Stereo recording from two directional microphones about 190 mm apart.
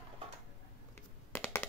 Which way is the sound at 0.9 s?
10° left (ahead or behind).